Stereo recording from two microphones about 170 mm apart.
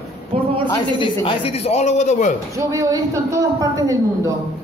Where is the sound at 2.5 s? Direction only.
20° right (ahead or behind).